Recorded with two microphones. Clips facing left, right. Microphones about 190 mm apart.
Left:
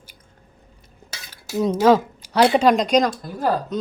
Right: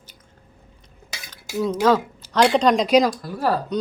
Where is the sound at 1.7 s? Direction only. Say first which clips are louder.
Left 3 dB; 15° left (ahead or behind).